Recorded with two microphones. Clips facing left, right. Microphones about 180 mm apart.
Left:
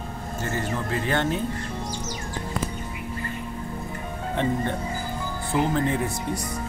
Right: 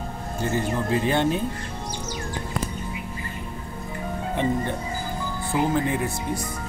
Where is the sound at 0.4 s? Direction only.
15° right (ahead or behind).